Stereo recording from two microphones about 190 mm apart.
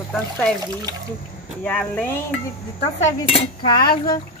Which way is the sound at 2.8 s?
35° left (ahead or behind).